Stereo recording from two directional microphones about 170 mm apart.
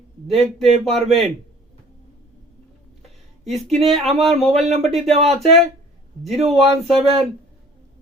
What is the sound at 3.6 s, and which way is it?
Speech, centre (ahead or behind).